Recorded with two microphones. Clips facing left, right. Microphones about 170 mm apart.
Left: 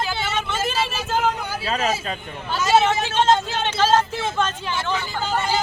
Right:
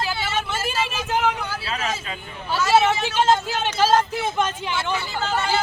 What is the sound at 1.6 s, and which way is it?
Speech, 40° left (ahead or behind).